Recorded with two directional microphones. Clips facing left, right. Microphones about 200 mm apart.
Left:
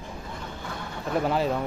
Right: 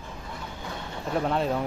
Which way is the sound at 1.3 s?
Centre (ahead or behind).